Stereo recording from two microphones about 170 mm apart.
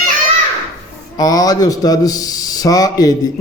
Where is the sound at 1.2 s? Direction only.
20° left (ahead or behind).